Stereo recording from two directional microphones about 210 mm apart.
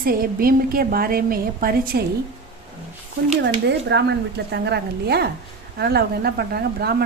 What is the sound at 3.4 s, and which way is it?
A woman's voice, 55° right (ahead or behind).